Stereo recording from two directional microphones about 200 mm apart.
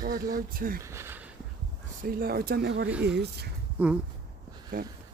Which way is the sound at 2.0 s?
50° right (ahead or behind).